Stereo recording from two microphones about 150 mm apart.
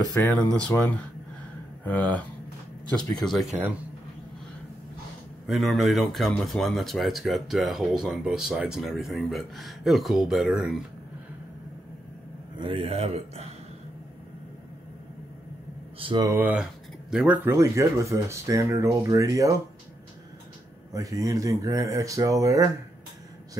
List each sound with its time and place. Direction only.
0.1 s speech: 10° left (ahead or behind)
5.5 s speech: centre (ahead or behind)
12.5 s a man's voice: 35° right (ahead or behind)
16.0 s speech: 35° right (ahead or behind)
16.3 s speech: 10° right (ahead or behind)
17.6 s speech: 20° right (ahead or behind)
20.9 s speech: 25° right (ahead or behind)